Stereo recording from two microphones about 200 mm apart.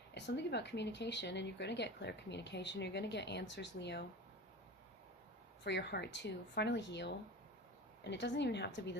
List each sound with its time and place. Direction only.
0.1 s speech: 60° left (ahead or behind)
5.6 s speech: 60° left (ahead or behind)